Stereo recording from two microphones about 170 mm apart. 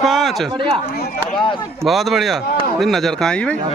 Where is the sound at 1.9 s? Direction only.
Centre (ahead or behind).